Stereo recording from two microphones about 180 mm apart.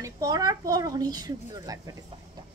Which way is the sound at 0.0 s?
20° right (ahead or behind).